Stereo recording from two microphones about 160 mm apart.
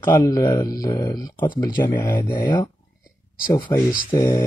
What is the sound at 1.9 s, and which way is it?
Speech, 15° left (ahead or behind).